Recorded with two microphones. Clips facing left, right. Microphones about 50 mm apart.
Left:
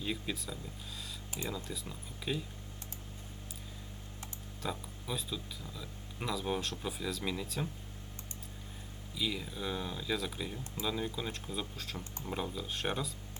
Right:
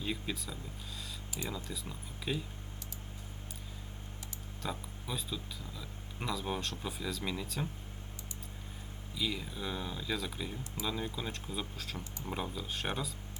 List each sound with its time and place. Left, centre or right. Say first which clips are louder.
0.0 s speech: even; centre
1.3 s speech: left 1 dB; left
1.7 s speech: even; centre
4.6 s speech: left 1 dB; centre
9.1 s speech: even; centre